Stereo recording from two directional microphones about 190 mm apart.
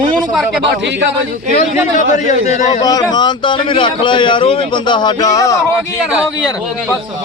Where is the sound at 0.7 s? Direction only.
65° right (ahead or behind).